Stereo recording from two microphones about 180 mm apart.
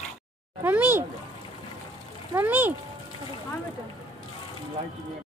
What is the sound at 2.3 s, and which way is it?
Speech, 10° right (ahead or behind).